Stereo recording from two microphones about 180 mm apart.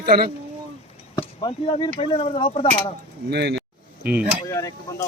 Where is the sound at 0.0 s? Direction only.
60° right (ahead or behind).